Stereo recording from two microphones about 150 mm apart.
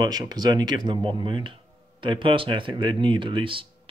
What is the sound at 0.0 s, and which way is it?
Speech, 25° right (ahead or behind).